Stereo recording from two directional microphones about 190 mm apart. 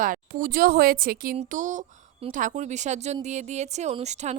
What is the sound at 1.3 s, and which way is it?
Speech, 40° right (ahead or behind).